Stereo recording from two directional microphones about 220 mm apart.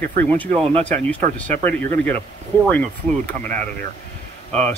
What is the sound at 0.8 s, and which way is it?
Speech, 5° left (ahead or behind).